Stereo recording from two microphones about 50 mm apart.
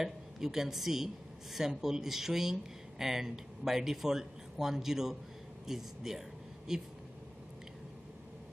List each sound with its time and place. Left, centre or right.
0.0 s speech: centre